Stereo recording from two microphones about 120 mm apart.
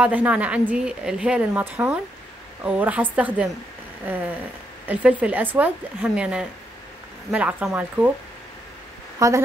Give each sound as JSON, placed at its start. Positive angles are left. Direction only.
{"t": 0.0, "sound": "a woman's voice", "side_deg": -10}
{"t": 9.2, "sound": "a woman's voice", "side_deg": -30}